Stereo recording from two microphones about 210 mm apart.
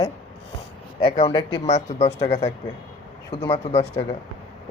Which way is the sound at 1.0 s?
25° left (ahead or behind).